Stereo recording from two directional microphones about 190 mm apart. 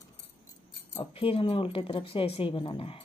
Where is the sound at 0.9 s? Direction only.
30° left (ahead or behind).